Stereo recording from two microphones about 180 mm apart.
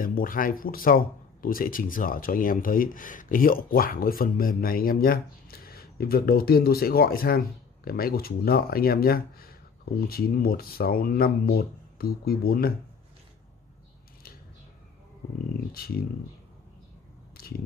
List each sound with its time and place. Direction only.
0.0 s speech: 50° left (ahead or behind)
15.7 s speech: 55° left (ahead or behind)
17.4 s biting: 55° left (ahead or behind)